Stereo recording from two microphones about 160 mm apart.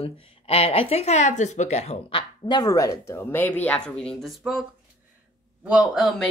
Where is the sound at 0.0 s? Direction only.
40° left (ahead or behind).